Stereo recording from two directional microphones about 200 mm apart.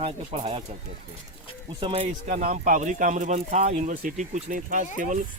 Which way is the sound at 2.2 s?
40° right (ahead or behind).